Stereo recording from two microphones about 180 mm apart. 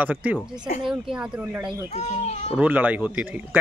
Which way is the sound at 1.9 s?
40° left (ahead or behind).